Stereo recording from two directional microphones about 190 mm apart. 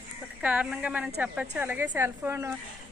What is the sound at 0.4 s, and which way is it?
A woman's voice, 5° right (ahead or behind).